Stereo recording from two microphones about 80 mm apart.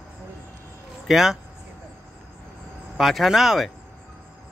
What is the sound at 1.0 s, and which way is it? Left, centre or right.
Speech, centre.